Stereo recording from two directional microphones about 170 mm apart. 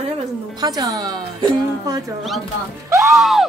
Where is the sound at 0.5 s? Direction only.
25° right (ahead or behind).